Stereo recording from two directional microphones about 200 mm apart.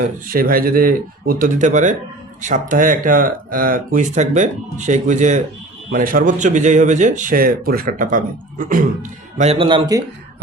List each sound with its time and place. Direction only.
0.3 s speech: 45° right (ahead or behind)
9.4 s speech: 30° right (ahead or behind)